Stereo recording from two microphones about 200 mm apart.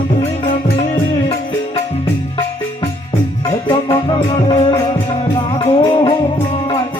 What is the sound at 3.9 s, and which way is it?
Music, 25° left (ahead or behind).